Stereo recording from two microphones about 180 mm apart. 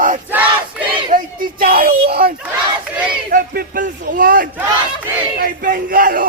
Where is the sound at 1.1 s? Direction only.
50° right (ahead or behind).